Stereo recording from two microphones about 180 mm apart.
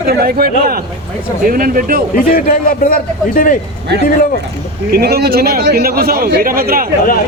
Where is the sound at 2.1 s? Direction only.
55° left (ahead or behind).